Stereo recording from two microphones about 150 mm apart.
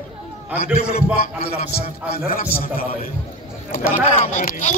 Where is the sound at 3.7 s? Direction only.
70° left (ahead or behind).